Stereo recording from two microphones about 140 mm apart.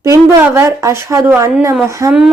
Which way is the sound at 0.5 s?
20° right (ahead or behind).